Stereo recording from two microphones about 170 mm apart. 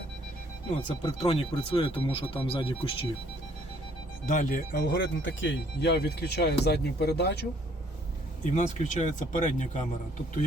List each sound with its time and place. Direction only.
1.2 s speech: 35° left (ahead or behind)
4.3 s speech: 50° left (ahead or behind)
4.7 s speech: 90° left
8.4 s speech: 45° left (ahead or behind)